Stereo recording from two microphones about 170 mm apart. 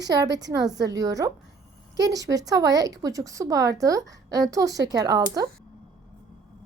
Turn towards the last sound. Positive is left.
turn(degrees=-20)  # may be behind; listen again after turning